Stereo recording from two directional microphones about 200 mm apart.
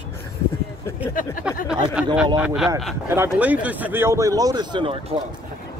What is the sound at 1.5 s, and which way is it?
Speech, 5° right (ahead or behind).